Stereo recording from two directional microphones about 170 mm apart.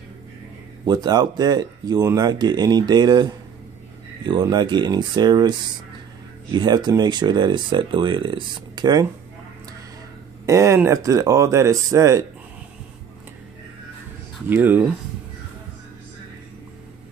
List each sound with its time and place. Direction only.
0.8 s speech: 25° right (ahead or behind)
10.4 s speech: 15° right (ahead or behind)
14.5 s speech: 10° right (ahead or behind)